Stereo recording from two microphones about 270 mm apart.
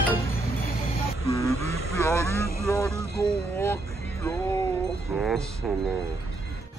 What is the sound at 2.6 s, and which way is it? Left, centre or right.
Vehicle, centre.